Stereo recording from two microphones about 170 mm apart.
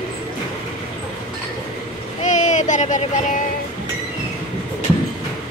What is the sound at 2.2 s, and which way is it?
Child singing, 45° left (ahead or behind).